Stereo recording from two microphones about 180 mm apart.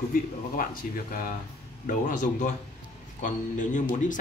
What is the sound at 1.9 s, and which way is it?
A man's voice, 45° left (ahead or behind).